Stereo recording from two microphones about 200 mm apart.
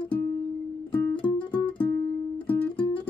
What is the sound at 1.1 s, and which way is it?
Music, 25° left (ahead or behind).